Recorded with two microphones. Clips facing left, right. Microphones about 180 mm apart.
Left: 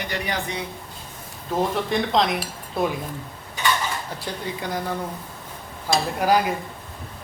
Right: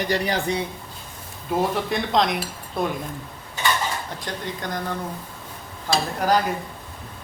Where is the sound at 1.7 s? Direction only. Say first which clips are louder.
Left 1 dB; centre (ahead or behind).